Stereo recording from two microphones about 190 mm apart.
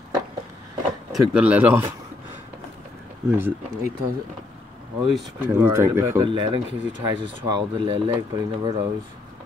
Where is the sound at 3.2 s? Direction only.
10° right (ahead or behind).